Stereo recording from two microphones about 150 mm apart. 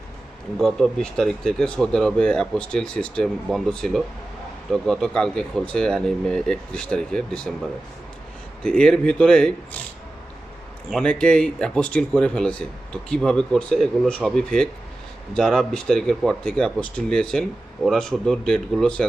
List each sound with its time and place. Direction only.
0.6 s speech: 5° left (ahead or behind)
8.6 s speech: 5° left (ahead or behind)
10.8 s speech: 5° left (ahead or behind)